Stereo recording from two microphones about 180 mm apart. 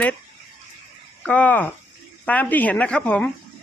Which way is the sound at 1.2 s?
5° left (ahead or behind).